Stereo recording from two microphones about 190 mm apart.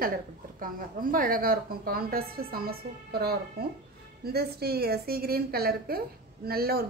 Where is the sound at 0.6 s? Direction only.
45° right (ahead or behind).